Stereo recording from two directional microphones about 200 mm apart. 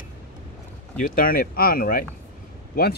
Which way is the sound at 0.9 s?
45° left (ahead or behind).